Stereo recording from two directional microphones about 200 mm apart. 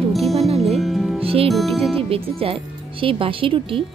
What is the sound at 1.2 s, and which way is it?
Music, 30° right (ahead or behind).